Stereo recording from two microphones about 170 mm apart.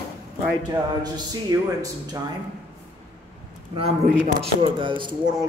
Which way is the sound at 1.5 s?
20° right (ahead or behind).